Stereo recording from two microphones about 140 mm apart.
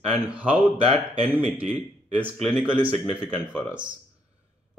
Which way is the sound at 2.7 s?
40° right (ahead or behind).